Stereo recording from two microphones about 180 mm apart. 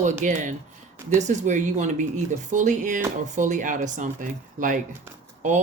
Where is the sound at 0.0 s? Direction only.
40° right (ahead or behind).